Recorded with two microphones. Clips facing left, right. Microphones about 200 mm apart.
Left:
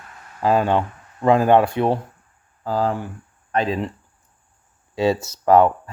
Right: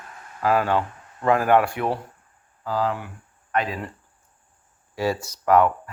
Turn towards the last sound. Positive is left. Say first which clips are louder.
# left 4 dB
turn(degrees=30)  # may be behind; listen again after turning